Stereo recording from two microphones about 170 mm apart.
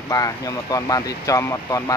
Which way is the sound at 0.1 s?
20° left (ahead or behind).